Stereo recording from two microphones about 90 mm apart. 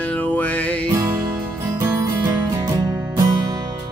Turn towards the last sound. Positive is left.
turn(degrees=-50)  # may be behind; listen again after turning